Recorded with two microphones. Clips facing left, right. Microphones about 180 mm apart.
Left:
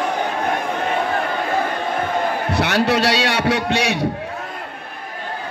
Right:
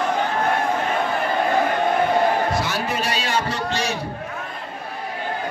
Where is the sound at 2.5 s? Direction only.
70° left (ahead or behind).